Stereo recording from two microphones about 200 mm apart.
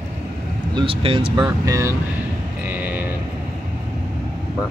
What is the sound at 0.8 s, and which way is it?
Speech, 25° right (ahead or behind).